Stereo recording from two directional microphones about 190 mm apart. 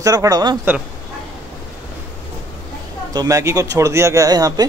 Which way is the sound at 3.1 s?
20° right (ahead or behind).